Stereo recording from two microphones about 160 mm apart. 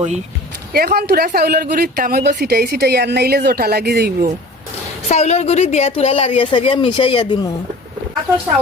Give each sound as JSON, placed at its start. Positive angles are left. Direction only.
{"t": 0.7, "sound": "speech", "side_deg": -75}
{"t": 5.0, "sound": "a woman's voice", "side_deg": 45}